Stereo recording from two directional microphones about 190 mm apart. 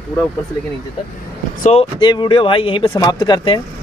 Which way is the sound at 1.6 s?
35° left (ahead or behind).